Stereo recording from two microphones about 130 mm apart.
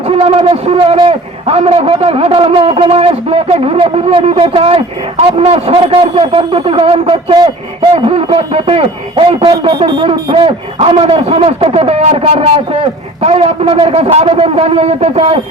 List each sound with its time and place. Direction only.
0.1 s a man's voice: 45° right (ahead or behind)
9.4 s a man's voice: 35° right (ahead or behind); by 15.4 s 50° right (ahead or behind)